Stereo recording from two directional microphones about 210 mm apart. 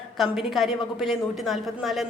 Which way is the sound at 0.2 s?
Centre (ahead or behind).